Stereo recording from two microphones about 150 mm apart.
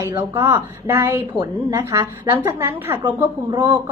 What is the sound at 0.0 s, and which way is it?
A woman's voice, 25° right (ahead or behind).